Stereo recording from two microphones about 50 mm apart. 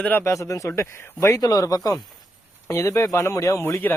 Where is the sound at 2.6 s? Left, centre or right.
Left.